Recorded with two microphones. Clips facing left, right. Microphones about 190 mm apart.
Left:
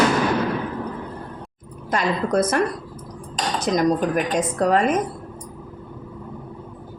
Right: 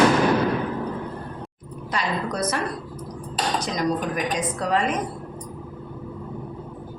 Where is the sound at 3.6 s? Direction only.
50° left (ahead or behind).